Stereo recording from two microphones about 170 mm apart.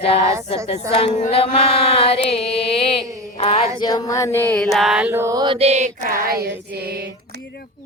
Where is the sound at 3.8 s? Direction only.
25° left (ahead or behind); by 6.2 s 50° right (ahead or behind).